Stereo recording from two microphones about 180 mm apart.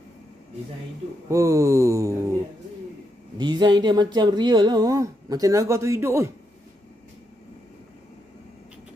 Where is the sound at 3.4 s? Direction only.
25° right (ahead or behind).